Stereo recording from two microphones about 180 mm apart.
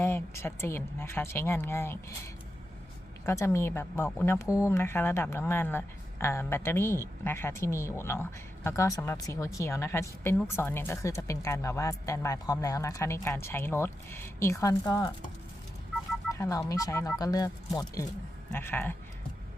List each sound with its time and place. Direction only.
0.0 s a woman's voice: 15° left (ahead or behind)
16.4 s a woman's voice: 20° left (ahead or behind)